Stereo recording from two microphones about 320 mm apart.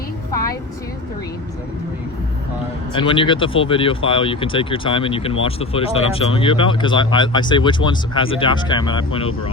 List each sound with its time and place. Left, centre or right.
2.9 s speech: centre